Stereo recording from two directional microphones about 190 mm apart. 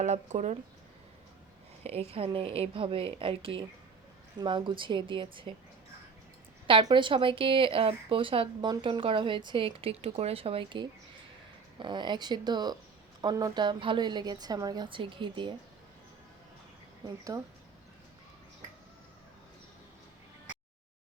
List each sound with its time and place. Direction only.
0.0 s speech: 35° right (ahead or behind)
1.8 s speech: 35° right (ahead or behind)
6.7 s speech: 25° right (ahead or behind)